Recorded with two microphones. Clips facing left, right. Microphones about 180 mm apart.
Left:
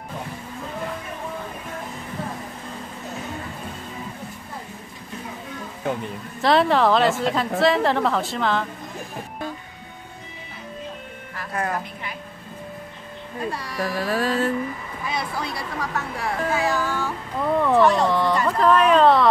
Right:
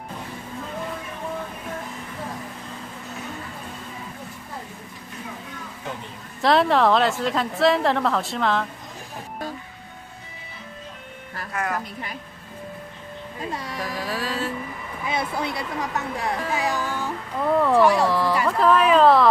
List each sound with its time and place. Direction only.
6.4 s a woman's voice: centre (ahead or behind)
11.5 s speech: 30° left (ahead or behind)
13.5 s speech: 20° right (ahead or behind)
13.7 s carnatic music: 50° left (ahead or behind)
15.0 s speech: 20° right (ahead or behind)
17.6 s speech: centre (ahead or behind)